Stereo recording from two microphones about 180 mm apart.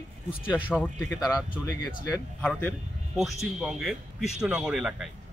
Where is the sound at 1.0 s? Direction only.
20° left (ahead or behind).